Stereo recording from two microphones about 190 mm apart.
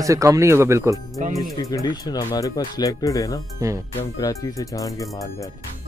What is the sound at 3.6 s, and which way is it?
Speech, 15° right (ahead or behind).